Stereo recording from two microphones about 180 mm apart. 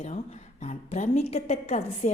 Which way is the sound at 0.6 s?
40° left (ahead or behind).